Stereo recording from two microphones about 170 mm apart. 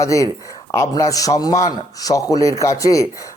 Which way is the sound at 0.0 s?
20° left (ahead or behind).